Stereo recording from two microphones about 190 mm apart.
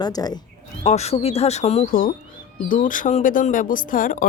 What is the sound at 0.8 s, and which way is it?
Speech, 35° left (ahead or behind).